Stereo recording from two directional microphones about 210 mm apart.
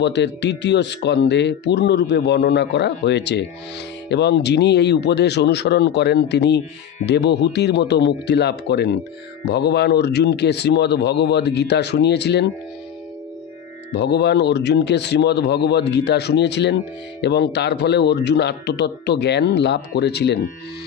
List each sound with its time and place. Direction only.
0.0 s speech: 55° left (ahead or behind)
13.9 s speech: 50° left (ahead or behind)